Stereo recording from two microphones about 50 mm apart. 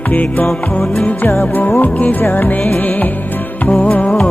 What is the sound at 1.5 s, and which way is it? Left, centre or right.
Music, left.